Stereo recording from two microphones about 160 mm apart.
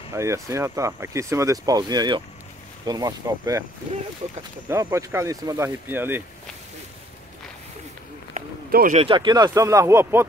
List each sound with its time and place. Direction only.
0.1 s speech: 20° right (ahead or behind)
4.6 s speech: 15° right (ahead or behind)
8.9 s speech: 35° right (ahead or behind); by 10.2 s 15° right (ahead or behind)